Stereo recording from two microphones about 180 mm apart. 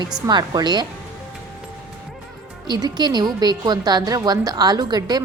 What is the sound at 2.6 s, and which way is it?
A woman's voice, 25° right (ahead or behind).